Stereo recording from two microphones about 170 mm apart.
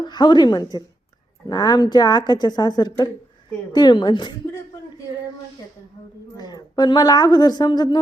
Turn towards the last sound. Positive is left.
turn(degrees=25)  # may be behind; listen again after turning